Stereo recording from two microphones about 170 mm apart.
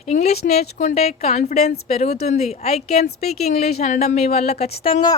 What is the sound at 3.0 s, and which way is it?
Speech, 65° left (ahead or behind).